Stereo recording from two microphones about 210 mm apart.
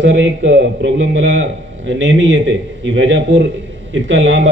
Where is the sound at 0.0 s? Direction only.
65° right (ahead or behind).